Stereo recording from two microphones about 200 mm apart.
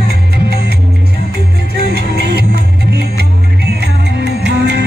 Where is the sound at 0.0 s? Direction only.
55° right (ahead or behind).